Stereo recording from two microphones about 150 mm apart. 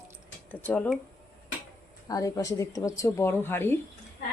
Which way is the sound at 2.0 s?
25° left (ahead or behind).